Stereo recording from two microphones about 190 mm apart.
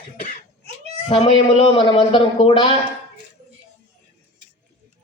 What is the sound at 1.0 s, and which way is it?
Speech, 30° left (ahead or behind).